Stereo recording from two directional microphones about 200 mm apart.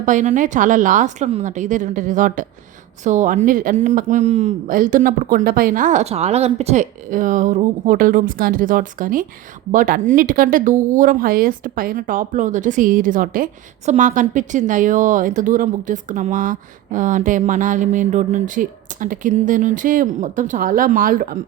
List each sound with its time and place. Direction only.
0.0 s a woman's voice: 40° right (ahead or behind)